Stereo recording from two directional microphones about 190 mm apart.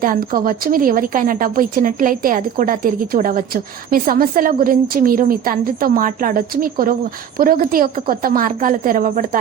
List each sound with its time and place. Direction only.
0.0 s a woman's voice: 45° right (ahead or behind)